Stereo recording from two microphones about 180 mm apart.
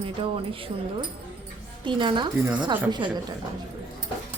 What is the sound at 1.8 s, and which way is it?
Speech, 25° right (ahead or behind).